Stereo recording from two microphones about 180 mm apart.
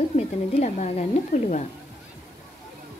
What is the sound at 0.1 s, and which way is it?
Speech, 40° left (ahead or behind).